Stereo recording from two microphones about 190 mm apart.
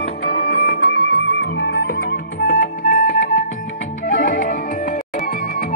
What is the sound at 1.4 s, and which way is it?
Music, 65° left (ahead or behind).